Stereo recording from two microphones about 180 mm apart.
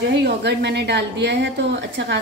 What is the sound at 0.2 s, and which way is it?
Speech, 70° right (ahead or behind).